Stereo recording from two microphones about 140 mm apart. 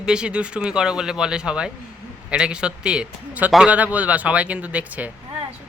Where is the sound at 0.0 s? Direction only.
5° right (ahead or behind).